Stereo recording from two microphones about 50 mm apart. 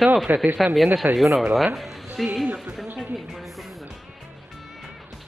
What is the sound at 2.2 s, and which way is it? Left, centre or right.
Speech, centre.